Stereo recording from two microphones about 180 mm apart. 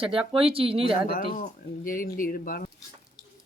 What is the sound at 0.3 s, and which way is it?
Speech, 30° right (ahead or behind).